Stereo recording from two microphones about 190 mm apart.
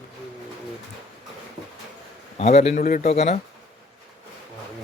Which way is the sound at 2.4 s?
35° left (ahead or behind).